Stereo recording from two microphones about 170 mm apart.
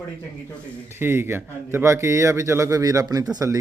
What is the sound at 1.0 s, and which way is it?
A man's voice, 15° right (ahead or behind).